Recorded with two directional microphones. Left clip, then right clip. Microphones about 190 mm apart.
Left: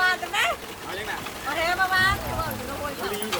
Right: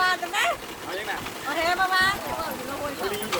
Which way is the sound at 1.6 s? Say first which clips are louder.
Even; 10° right (ahead or behind).